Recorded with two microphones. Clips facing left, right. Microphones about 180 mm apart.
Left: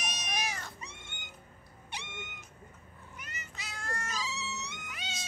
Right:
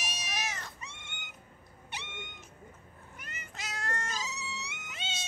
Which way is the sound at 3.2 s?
50° right (ahead or behind).